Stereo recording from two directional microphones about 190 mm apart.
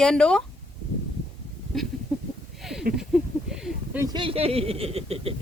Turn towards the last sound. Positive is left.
turn(degrees=-30)  # may be behind; listen again after turning